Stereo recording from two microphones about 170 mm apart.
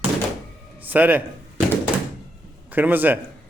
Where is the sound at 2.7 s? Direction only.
10° right (ahead or behind).